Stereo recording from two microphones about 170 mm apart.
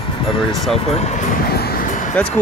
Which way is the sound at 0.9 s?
40° left (ahead or behind).